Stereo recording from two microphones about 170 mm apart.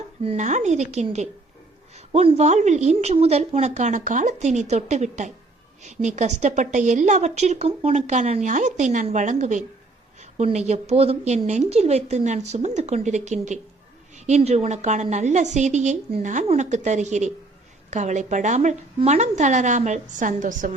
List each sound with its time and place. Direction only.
0.2 s a woman's voice: 40° right (ahead or behind)